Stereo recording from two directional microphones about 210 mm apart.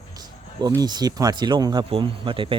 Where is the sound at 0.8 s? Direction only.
20° right (ahead or behind).